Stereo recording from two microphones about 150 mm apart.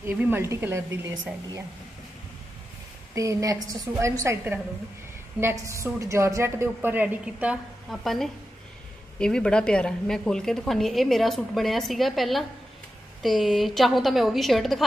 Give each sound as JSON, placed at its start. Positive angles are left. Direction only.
{"t": 0.0, "sound": "a woman's voice", "side_deg": -15}
{"t": 3.2, "sound": "a woman's voice", "side_deg": -20}
{"t": 7.9, "sound": "a woman's voice", "side_deg": 0}